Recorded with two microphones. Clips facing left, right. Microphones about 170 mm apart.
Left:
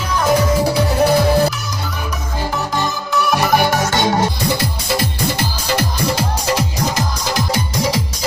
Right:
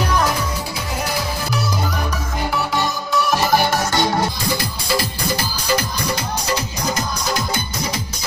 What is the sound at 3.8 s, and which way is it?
Music, 20° left (ahead or behind).